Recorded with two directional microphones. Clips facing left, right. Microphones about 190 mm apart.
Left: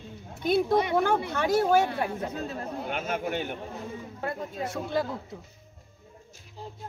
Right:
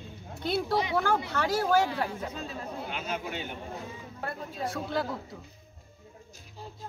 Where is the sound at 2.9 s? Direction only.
55° left (ahead or behind).